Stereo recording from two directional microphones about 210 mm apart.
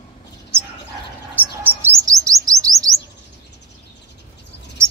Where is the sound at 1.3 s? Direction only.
10° right (ahead or behind).